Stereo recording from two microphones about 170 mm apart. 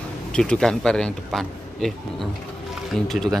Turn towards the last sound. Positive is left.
turn(degrees=0)  # may be behind; listen again after turning